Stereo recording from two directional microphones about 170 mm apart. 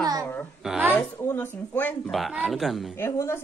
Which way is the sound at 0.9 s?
10° left (ahead or behind).